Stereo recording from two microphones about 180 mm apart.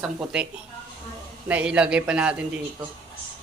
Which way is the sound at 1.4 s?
5° right (ahead or behind).